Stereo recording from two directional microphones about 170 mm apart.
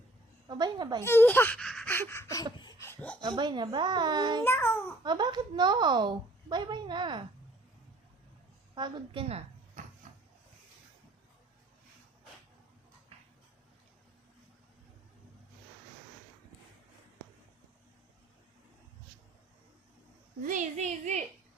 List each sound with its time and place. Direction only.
0.4 s a woman's voice: 25° right (ahead or behind)
1.0 s a sound: 10° left (ahead or behind)
3.2 s a woman's voice: 25° right (ahead or behind)
4.4 s a child's voice: 15° left (ahead or behind)
5.0 s a woman's voice: 25° right (ahead or behind)
8.7 s a woman's voice: 30° right (ahead or behind)
10.0 s a sound: 45° right (ahead or behind)
20.4 s a woman's voice: 50° right (ahead or behind)